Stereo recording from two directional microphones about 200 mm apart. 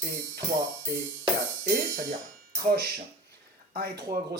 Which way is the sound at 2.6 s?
50° right (ahead or behind).